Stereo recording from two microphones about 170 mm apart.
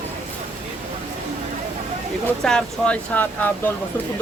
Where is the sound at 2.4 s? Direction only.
5° left (ahead or behind).